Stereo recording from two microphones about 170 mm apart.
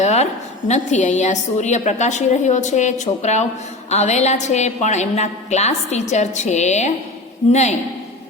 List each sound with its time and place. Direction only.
0.0 s a woman's voice: 40° left (ahead or behind)